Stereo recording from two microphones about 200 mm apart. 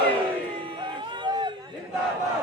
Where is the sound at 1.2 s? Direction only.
25° right (ahead or behind).